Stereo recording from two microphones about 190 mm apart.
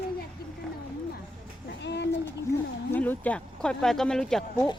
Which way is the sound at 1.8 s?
65° left (ahead or behind).